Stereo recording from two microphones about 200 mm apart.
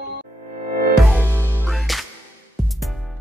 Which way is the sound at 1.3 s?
5° left (ahead or behind).